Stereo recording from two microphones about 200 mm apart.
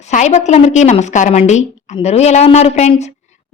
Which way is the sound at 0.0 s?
35° left (ahead or behind).